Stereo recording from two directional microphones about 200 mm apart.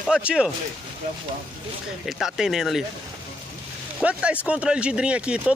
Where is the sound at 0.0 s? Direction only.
5° right (ahead or behind).